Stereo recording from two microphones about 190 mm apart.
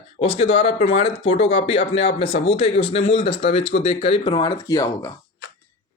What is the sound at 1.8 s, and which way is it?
Speech, 75° left (ahead or behind).